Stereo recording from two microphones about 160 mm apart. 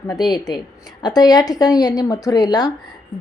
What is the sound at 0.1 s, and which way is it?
A woman's voice, 25° left (ahead or behind).